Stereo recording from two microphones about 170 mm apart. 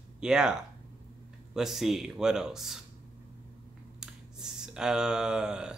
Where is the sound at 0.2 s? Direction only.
5° right (ahead or behind).